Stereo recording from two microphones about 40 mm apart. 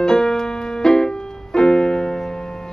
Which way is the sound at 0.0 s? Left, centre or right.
Centre.